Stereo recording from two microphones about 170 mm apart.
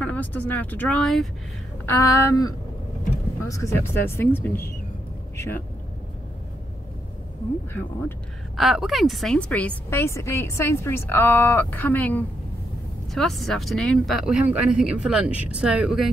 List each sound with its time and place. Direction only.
0.0 s a woman's voice: 10° left (ahead or behind)
1.9 s a woman's voice: 15° left (ahead or behind)
8.5 s a woman's voice: centre (ahead or behind)